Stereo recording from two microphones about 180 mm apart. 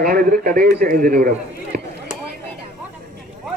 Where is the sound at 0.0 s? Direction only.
55° right (ahead or behind).